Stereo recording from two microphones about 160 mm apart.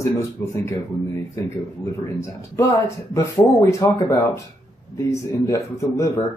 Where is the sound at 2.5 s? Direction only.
20° left (ahead or behind).